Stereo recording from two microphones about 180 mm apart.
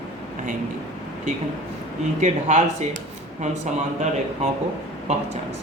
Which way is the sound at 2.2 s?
40° right (ahead or behind).